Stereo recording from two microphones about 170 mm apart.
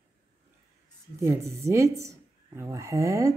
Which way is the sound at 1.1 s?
20° right (ahead or behind).